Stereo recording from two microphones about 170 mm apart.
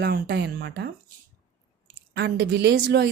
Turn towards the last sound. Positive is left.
turn(degrees=-75)  # may be behind; listen again after turning